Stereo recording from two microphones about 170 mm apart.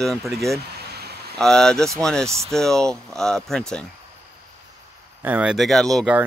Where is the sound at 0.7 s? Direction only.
70° right (ahead or behind).